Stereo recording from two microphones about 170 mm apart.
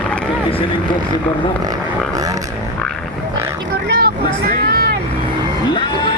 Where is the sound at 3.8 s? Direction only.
60° right (ahead or behind).